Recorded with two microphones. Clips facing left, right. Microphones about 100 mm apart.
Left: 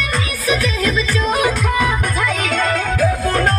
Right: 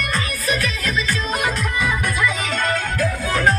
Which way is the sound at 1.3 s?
65° left (ahead or behind).